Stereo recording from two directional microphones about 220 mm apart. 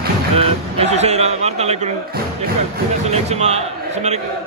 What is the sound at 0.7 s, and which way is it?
Speech, 30° right (ahead or behind).